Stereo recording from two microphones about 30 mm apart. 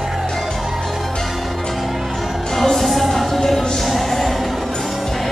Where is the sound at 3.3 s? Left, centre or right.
Centre.